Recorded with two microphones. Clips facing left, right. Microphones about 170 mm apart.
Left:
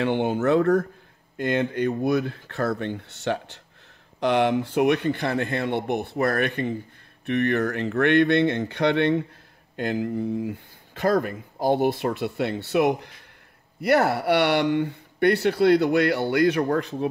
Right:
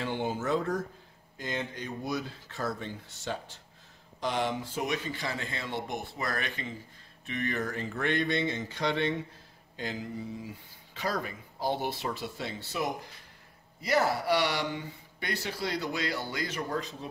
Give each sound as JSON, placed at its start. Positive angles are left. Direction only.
{"t": 0.0, "sound": "speech", "side_deg": 65}